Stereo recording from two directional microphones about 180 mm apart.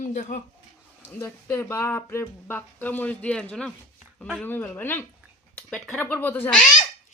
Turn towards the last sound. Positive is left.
turn(degrees=10)  # may be behind; listen again after turning